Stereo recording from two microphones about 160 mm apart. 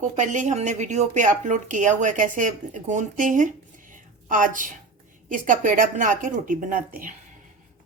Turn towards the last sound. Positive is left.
turn(degrees=-60)  # may be behind; listen again after turning